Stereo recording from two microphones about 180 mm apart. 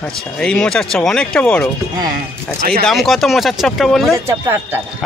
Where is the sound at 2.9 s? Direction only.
Centre (ahead or behind).